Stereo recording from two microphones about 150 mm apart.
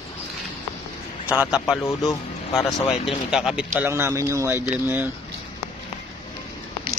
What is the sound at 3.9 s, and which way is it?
Speech, 15° right (ahead or behind).